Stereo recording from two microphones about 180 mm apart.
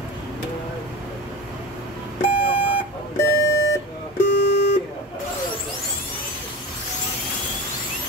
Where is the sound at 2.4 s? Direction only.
30° left (ahead or behind).